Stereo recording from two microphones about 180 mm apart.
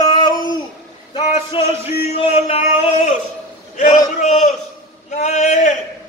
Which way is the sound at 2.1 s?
35° left (ahead or behind).